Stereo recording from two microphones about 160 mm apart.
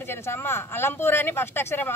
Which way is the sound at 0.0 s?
15° left (ahead or behind).